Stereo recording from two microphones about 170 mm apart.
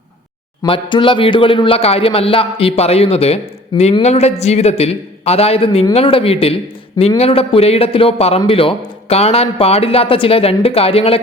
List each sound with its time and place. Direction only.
0.6 s speech: 30° left (ahead or behind)